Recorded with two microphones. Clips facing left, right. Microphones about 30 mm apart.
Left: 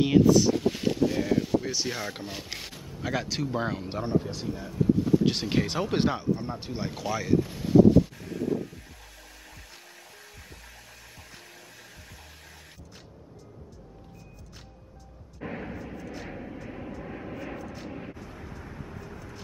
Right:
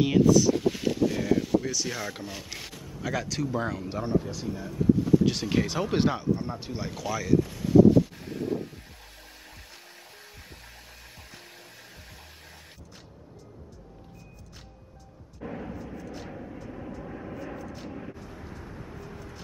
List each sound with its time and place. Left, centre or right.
0.0 s speech: centre
1.7 s speech: left
5.2 s speech: centre
5.6 s speech: centre
8.3 s a sound: centre
15.4 s vehicle: left
16.0 s vehicle: centre
16.3 s vehicle: left
17.6 s vehicle: centre